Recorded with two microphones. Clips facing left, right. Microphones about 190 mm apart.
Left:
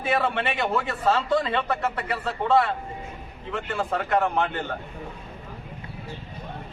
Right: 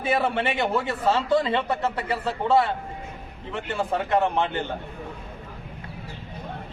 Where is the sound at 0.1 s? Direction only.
25° right (ahead or behind).